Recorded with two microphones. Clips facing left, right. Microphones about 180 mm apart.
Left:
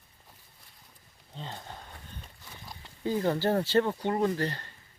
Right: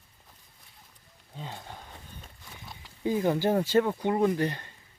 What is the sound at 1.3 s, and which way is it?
Speech, 10° right (ahead or behind).